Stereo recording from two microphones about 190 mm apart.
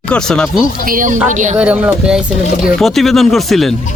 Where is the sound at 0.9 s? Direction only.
45° right (ahead or behind).